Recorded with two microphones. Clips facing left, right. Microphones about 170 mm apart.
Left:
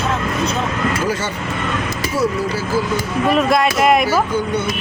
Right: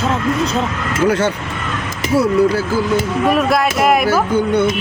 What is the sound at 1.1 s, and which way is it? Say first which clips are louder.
Speech: right 6 dB; 60° right (ahead or behind).